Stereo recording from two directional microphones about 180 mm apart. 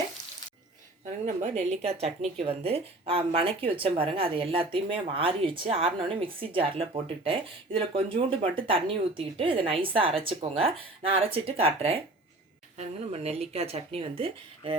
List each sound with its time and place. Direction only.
1.2 s speech: 35° right (ahead or behind)